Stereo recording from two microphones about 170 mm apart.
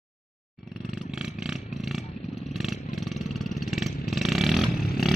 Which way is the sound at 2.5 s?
Centre (ahead or behind).